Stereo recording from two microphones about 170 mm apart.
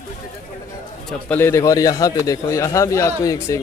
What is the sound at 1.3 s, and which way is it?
A man's voice, 15° left (ahead or behind).